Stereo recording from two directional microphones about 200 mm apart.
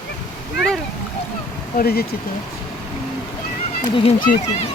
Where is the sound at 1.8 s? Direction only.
50° left (ahead or behind).